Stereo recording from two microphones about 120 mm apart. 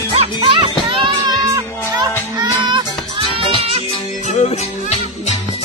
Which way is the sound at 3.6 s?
55° right (ahead or behind).